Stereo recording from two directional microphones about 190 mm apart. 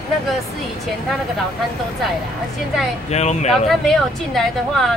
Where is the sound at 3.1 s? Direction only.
35° left (ahead or behind).